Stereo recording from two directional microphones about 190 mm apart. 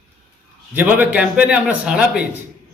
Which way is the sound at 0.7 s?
10° right (ahead or behind).